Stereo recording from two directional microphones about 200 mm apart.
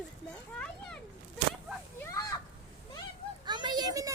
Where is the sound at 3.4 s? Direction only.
20° right (ahead or behind).